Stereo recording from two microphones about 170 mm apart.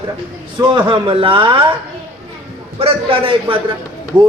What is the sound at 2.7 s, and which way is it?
Speech, 35° right (ahead or behind).